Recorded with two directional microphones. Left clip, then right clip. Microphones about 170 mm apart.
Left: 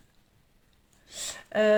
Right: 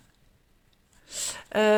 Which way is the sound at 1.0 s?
40° right (ahead or behind).